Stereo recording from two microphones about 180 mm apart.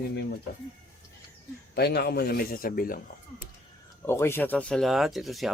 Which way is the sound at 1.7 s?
65° left (ahead or behind).